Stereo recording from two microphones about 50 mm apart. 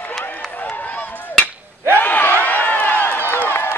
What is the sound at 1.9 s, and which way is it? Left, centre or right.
Crowd, left.